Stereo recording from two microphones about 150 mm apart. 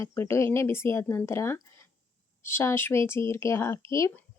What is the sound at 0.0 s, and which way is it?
Speech, 20° left (ahead or behind).